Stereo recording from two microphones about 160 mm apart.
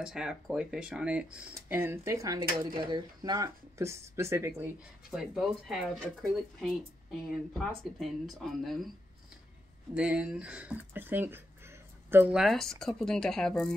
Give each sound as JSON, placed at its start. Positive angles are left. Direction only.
{"t": 0.0, "sound": "speech", "side_deg": -5}
{"t": 2.6, "sound": "speech", "side_deg": -60}
{"t": 2.9, "sound": "speech", "side_deg": -30}
{"t": 5.1, "sound": "speech", "side_deg": -5}
{"t": 9.9, "sound": "speech", "side_deg": -5}